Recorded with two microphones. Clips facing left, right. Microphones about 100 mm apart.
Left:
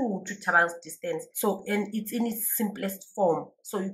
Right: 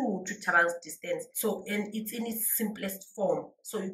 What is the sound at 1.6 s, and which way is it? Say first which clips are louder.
Speech: left 5 dB; 55° left (ahead or behind).